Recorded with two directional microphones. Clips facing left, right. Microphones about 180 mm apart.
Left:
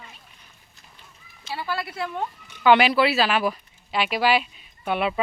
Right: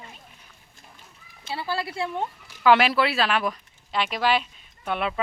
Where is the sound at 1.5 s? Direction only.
30° right (ahead or behind).